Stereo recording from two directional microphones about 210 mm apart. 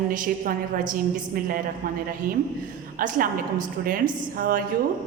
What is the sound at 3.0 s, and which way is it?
Speech, 40° right (ahead or behind).